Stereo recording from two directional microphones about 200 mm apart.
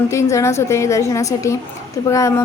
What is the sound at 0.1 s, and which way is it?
Speech, 15° left (ahead or behind).